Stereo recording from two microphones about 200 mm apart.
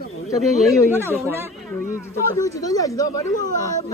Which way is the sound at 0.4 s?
Centre (ahead or behind).